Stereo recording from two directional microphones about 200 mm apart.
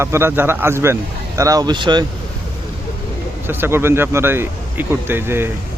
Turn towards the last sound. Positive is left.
turn(degrees=-10)  # may be behind; listen again after turning